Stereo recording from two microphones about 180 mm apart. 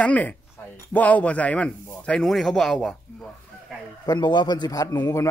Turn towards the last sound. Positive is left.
turn(degrees=15)  # may be behind; listen again after turning